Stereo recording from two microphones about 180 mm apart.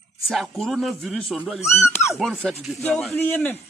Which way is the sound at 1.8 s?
15° left (ahead or behind).